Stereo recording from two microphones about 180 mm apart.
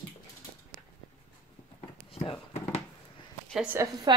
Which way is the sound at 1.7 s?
35° left (ahead or behind).